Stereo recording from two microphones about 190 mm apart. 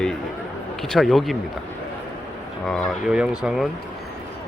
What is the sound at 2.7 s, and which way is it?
Speech, 5° left (ahead or behind).